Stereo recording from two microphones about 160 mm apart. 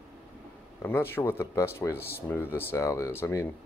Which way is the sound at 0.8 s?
15° left (ahead or behind).